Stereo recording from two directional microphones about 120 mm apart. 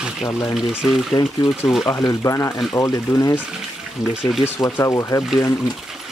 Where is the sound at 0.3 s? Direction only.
25° left (ahead or behind).